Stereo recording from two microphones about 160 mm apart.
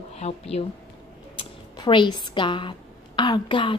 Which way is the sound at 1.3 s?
30° left (ahead or behind).